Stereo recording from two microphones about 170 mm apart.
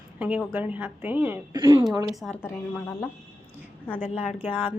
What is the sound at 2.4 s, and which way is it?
Speech, 10° left (ahead or behind).